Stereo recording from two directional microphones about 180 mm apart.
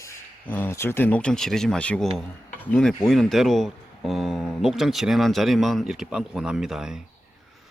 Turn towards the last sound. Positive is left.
turn(degrees=-5)  # may be behind; listen again after turning